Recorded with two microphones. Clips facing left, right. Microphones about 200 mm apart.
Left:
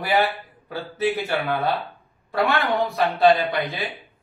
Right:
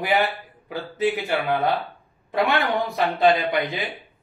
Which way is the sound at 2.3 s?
20° right (ahead or behind).